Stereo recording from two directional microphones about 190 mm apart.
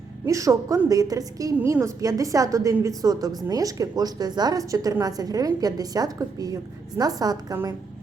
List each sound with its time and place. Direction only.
0.3 s a woman's voice: 15° right (ahead or behind)